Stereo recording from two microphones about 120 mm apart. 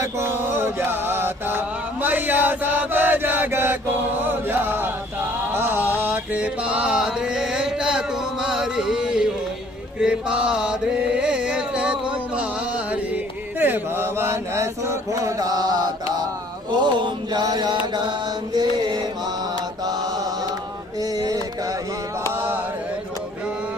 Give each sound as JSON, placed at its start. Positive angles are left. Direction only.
{"t": 0.0, "sound": "mantra", "side_deg": -20}
{"t": 4.2, "sound": "chant", "side_deg": -15}
{"t": 5.5, "sound": "mantra", "side_deg": -20}
{"t": 9.9, "sound": "chant", "side_deg": -10}
{"t": 13.6, "sound": "mantra", "side_deg": -20}